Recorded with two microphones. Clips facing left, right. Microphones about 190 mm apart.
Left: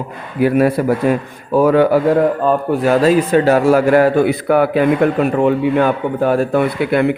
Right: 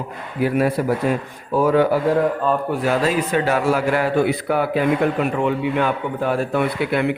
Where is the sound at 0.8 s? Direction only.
70° left (ahead or behind).